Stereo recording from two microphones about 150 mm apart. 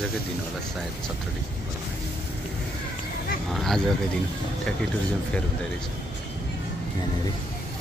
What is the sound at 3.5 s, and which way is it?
Speech, centre (ahead or behind).